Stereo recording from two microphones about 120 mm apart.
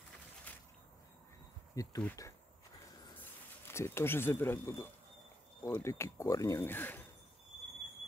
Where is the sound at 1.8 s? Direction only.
30° left (ahead or behind).